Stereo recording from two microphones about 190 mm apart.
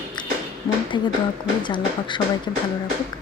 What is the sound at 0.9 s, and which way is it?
Speech, 25° left (ahead or behind).